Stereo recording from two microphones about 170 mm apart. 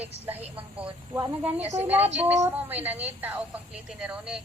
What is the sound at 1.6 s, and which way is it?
Speech, 40° right (ahead or behind).